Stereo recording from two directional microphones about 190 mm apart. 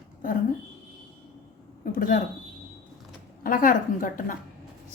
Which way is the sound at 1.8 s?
45° left (ahead or behind).